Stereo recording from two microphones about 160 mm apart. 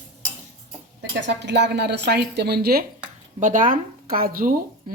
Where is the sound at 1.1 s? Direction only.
90° right; by 2.8 s 75° right (ahead or behind).